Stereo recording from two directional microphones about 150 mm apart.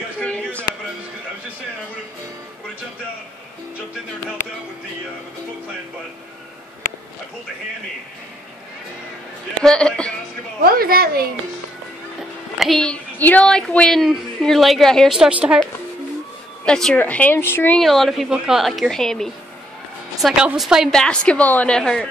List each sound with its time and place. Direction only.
0.2 s a sound: 10° left (ahead or behind)
9.6 s a man's voice: 5° left (ahead or behind)
10.6 s a woman's voice: 80° right
12.5 s a woman's voice: centre (ahead or behind)
16.6 s speech: 5° left (ahead or behind)
17.7 s a woman's voice: centre (ahead or behind)